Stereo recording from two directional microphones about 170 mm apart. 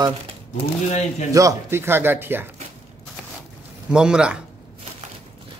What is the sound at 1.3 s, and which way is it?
Speech, 15° right (ahead or behind).